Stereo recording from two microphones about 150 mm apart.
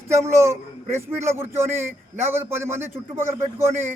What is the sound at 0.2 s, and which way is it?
Speech, 15° right (ahead or behind).